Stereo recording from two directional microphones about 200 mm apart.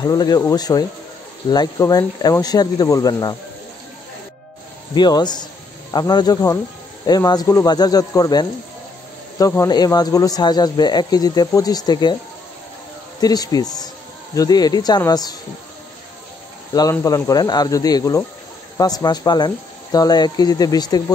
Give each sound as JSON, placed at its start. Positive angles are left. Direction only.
{"t": 0.0, "sound": "speech", "side_deg": 20}
{"t": 4.9, "sound": "speech", "side_deg": 20}
{"t": 13.2, "sound": "speech", "side_deg": 20}
{"t": 16.9, "sound": "speech", "side_deg": 15}